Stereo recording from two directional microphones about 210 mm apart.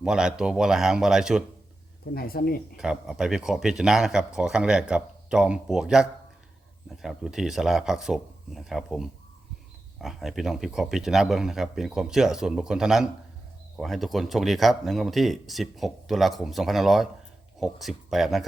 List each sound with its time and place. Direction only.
0.0 s speech: 5° right (ahead or behind)
2.1 s speech: 45° left (ahead or behind)
2.7 s speech: 5° right (ahead or behind)